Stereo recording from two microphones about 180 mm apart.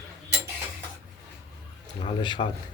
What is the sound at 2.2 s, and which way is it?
Speech, 25° left (ahead or behind).